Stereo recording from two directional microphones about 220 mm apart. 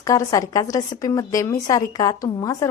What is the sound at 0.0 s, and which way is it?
A woman's voice, 15° left (ahead or behind).